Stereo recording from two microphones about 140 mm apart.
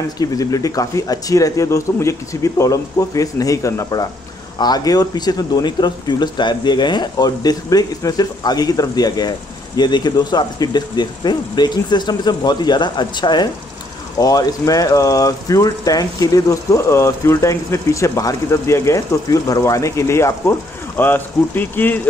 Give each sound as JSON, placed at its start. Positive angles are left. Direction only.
{"t": 0.2, "sound": "speech", "side_deg": 25}